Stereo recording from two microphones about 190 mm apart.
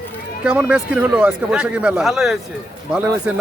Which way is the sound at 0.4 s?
5° right (ahead or behind).